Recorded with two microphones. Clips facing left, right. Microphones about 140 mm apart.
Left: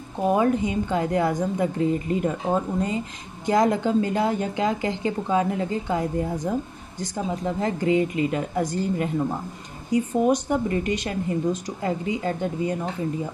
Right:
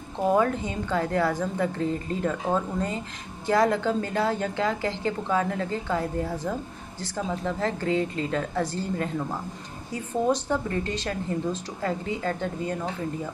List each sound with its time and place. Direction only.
0.3 s speech: 15° left (ahead or behind)